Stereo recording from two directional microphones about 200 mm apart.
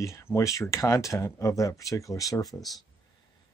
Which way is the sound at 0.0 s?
15° left (ahead or behind).